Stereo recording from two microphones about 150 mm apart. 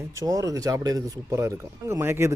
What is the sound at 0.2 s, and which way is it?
Speech, 20° right (ahead or behind).